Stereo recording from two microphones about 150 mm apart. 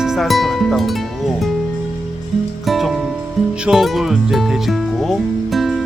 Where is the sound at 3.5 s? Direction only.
5° right (ahead or behind).